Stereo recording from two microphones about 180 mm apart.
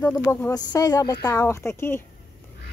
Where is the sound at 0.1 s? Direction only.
10° left (ahead or behind).